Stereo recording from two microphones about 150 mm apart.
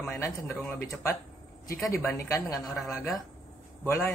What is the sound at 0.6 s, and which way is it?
Speech, 10° left (ahead or behind).